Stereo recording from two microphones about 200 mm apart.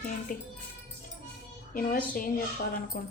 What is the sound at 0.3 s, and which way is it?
Speech, 40° left (ahead or behind).